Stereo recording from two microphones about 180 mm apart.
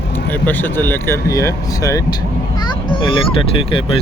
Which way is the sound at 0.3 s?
10° left (ahead or behind).